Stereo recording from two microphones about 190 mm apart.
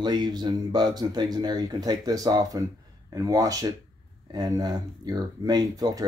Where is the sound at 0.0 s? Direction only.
20° right (ahead or behind).